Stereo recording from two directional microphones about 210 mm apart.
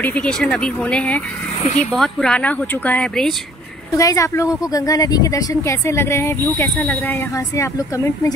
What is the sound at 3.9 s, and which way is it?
Speech, 15° left (ahead or behind).